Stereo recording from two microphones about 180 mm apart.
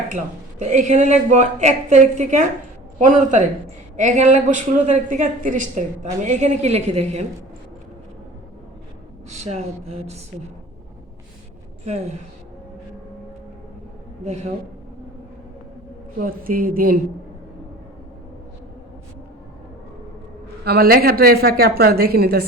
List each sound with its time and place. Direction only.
0.6 s a woman's voice: 40° right (ahead or behind)
9.3 s a woman's voice: 40° right (ahead or behind)
16.1 s a woman's voice: 55° right (ahead or behind)
20.7 s a woman's voice: 60° right (ahead or behind)